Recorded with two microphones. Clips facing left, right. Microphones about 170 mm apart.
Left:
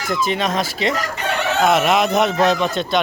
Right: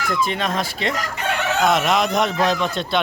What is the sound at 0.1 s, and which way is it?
A man's voice, centre (ahead or behind).